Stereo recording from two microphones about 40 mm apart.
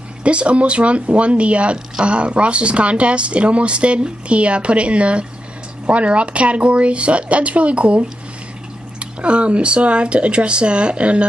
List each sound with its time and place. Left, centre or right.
0.2 s speech: right
9.0 s speech: right